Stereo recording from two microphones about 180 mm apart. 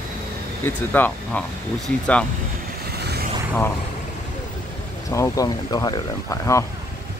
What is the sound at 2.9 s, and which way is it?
Vehicle, 65° right (ahead or behind).